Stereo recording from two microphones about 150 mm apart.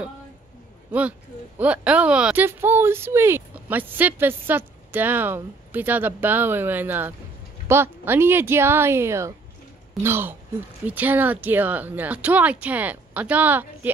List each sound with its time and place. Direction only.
1.6 s speech: 10° right (ahead or behind)